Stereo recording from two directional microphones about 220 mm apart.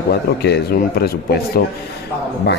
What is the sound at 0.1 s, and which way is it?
Speech, 45° left (ahead or behind).